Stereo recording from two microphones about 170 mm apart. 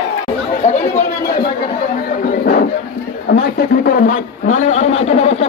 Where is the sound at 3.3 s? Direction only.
60° left (ahead or behind); by 5.4 s 40° left (ahead or behind).